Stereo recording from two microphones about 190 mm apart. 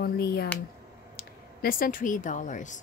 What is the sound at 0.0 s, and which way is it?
Speech, 55° left (ahead or behind).